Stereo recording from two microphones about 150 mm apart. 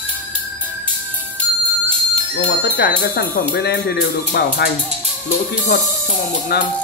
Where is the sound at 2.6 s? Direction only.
90° left.